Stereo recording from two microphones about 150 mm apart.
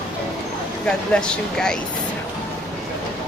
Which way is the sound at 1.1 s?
5° left (ahead or behind).